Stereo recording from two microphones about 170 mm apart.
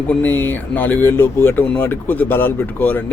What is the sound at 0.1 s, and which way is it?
Speech, 10° left (ahead or behind).